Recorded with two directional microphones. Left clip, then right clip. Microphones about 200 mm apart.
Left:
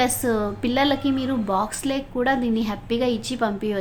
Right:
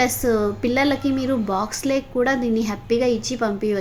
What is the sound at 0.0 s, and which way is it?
A woman's voice, 10° right (ahead or behind).